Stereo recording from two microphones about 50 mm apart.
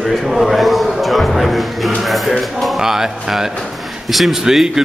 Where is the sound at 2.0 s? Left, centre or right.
Centre.